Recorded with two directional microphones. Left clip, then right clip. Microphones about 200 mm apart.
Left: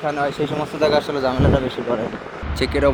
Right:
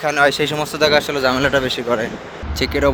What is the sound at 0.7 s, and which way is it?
Speech, 5° right (ahead or behind).